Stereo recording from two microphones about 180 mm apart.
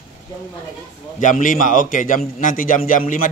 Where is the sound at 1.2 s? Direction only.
45° left (ahead or behind).